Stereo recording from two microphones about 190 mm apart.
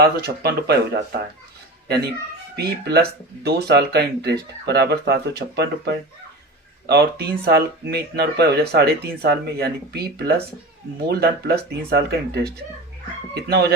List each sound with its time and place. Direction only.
0.0 s speech: 60° right (ahead or behind)
2.6 s speech: 55° right (ahead or behind)